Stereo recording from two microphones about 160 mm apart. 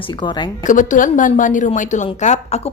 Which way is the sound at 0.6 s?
55° left (ahead or behind).